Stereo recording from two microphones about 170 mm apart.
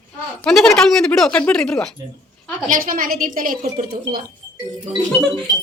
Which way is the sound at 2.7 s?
55° right (ahead or behind).